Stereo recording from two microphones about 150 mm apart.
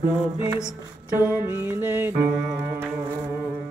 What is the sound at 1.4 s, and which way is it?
Music, 15° right (ahead or behind).